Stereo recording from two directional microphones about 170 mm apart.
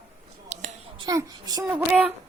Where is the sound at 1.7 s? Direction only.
5° right (ahead or behind).